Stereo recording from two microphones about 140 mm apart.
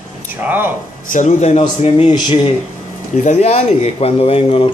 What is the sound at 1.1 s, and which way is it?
Speech, 60° left (ahead or behind).